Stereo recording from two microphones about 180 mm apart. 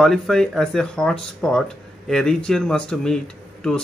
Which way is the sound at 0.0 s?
Centre (ahead or behind).